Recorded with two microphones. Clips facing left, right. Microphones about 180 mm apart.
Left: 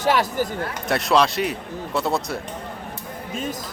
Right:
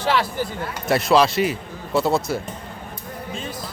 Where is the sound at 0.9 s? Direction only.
Centre (ahead or behind).